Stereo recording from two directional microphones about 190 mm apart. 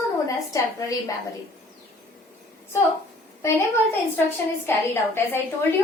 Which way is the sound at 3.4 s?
10° left (ahead or behind).